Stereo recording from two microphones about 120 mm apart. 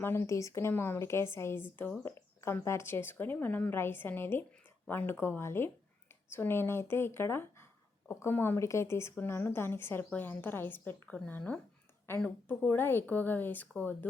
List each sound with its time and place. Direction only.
0.0 s a woman's voice: 20° left (ahead or behind)